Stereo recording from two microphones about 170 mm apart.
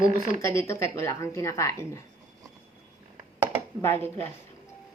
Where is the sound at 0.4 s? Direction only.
15° left (ahead or behind).